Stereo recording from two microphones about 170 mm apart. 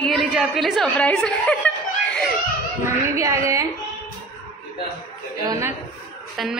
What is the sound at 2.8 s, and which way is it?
Speech, 15° right (ahead or behind).